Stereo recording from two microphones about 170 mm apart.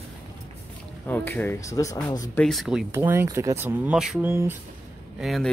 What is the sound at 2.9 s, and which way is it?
Speech, 15° right (ahead or behind).